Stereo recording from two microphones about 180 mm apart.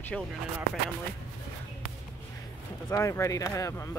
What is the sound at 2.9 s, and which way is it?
Speech, 15° left (ahead or behind).